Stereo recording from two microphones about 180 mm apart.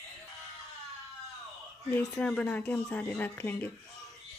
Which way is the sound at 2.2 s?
5° left (ahead or behind).